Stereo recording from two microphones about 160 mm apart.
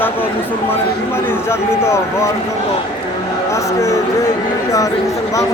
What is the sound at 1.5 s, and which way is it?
Speech, 15° left (ahead or behind).